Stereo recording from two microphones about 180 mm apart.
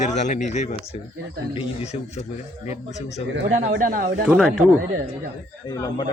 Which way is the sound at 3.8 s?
50° right (ahead or behind).